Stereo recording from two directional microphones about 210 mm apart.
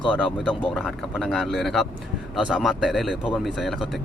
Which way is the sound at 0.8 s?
5° left (ahead or behind).